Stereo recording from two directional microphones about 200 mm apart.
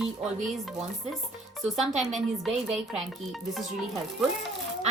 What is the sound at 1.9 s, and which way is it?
A woman's voice, centre (ahead or behind).